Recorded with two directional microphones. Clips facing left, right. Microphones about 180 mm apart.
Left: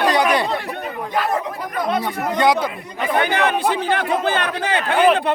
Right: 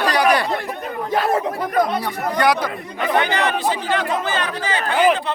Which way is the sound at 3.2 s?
55° left (ahead or behind).